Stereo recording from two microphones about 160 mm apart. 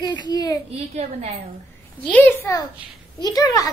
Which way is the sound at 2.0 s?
10° left (ahead or behind).